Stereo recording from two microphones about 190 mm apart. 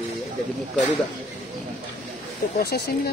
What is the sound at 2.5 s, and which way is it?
Speech, 55° left (ahead or behind).